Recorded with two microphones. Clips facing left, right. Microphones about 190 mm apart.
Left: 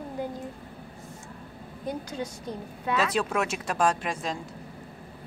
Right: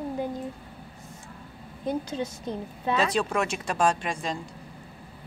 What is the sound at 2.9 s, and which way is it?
Speech, 5° left (ahead or behind).